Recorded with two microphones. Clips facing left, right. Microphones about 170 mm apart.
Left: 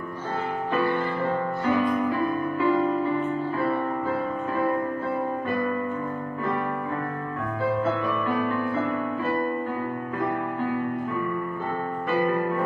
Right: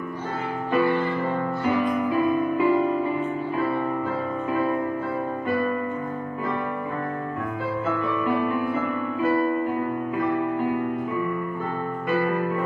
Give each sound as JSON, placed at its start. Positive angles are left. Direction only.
{"t": 1.7, "sound": "music", "side_deg": -15}
{"t": 8.4, "sound": "music", "side_deg": -15}